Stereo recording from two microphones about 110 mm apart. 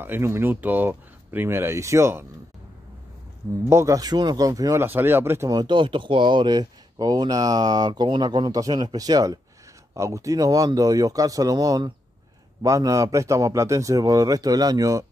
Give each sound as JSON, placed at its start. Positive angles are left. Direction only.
{"t": 0.0, "sound": "speech", "side_deg": -20}
{"t": 3.6, "sound": "speech", "side_deg": -25}
{"t": 4.8, "sound": "speech", "side_deg": -20}
{"t": 5.5, "sound": "speech", "side_deg": -40}